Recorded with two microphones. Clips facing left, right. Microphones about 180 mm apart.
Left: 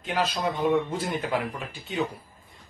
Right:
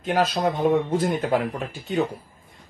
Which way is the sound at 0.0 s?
45° right (ahead or behind).